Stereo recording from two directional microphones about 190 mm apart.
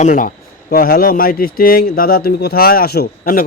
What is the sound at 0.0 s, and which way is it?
A man's voice, 45° left (ahead or behind).